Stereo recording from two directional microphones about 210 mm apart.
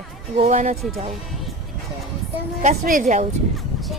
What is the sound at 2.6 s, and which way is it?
Speech, 35° right (ahead or behind).